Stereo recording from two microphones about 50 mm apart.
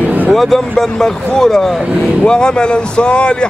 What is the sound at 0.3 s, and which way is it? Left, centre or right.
A man's voice, centre.